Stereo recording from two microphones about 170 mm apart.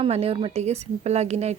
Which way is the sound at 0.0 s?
35° right (ahead or behind).